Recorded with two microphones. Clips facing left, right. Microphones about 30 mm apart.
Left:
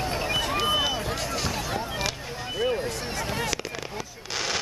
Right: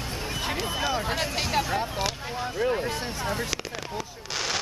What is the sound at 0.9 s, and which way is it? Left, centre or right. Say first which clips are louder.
Vehicle: right 2 dB; right.